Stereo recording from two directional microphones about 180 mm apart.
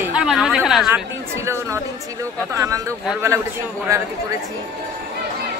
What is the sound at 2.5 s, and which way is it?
Speech, 20° right (ahead or behind).